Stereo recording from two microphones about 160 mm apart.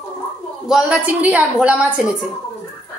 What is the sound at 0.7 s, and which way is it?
A woman's voice, 5° right (ahead or behind).